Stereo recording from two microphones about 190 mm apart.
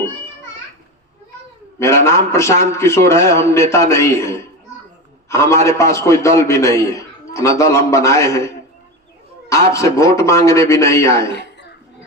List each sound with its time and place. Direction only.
1.8 s a man's voice: 15° left (ahead or behind)